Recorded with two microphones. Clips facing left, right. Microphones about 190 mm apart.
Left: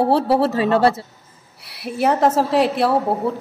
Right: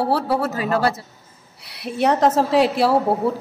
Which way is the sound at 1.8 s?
5° left (ahead or behind).